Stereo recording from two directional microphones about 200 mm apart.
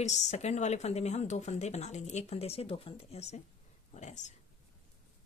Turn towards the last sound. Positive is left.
turn(degrees=35)  # may be behind; listen again after turning